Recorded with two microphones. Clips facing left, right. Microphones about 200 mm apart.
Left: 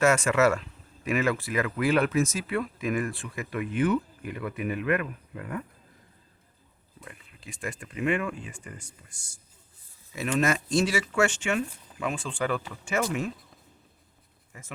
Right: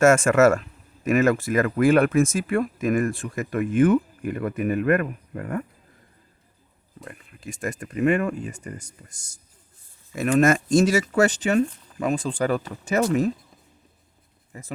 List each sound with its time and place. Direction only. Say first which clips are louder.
0.0 s speech: right 6 dB; 50° right (ahead or behind)
7.0 s speech: right 8 dB; 50° right (ahead or behind)
14.5 s speech: right 8 dB; 35° right (ahead or behind)